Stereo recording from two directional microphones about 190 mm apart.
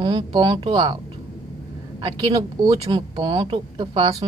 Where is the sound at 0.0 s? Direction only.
25° right (ahead or behind).